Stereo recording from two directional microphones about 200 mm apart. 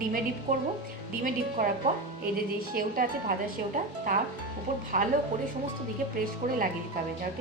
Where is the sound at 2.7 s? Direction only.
45° right (ahead or behind).